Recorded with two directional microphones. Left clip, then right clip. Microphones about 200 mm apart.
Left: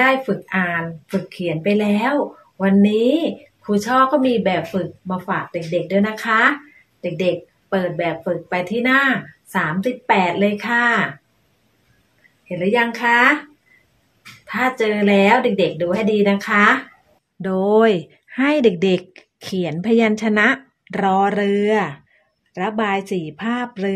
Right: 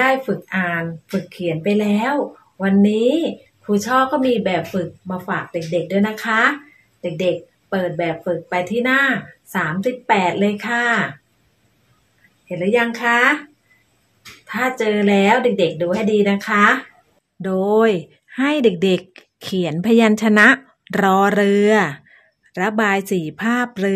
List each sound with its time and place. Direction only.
0.0 s speech: centre (ahead or behind)
7.7 s speech: 5° left (ahead or behind)
12.4 s speech: 5° left (ahead or behind)
14.4 s speech: 5° left (ahead or behind); by 23.9 s 15° right (ahead or behind)